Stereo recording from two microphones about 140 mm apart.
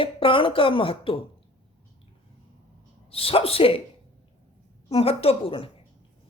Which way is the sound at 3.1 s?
45° left (ahead or behind).